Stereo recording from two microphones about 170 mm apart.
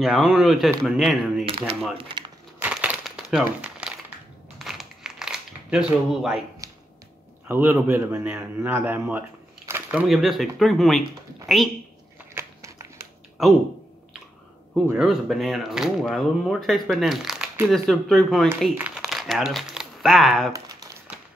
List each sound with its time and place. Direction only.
0.0 s speech: centre (ahead or behind)
1.4 s a sound: 35° right (ahead or behind)
2.0 s speech: 30° right (ahead or behind)
2.6 s crumpling: 5° right (ahead or behind)
7.4 s a man's voice: 10° right (ahead or behind)
12.4 s a sound: 15° right (ahead or behind)
15.0 s speech: centre (ahead or behind)
18.8 s crumpling: 5° right (ahead or behind)
20.5 s crumpling: 20° right (ahead or behind)